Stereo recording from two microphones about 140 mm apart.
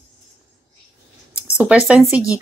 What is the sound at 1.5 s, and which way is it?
Speech, 10° right (ahead or behind).